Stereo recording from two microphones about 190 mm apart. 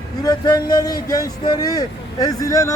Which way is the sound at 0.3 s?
20° left (ahead or behind).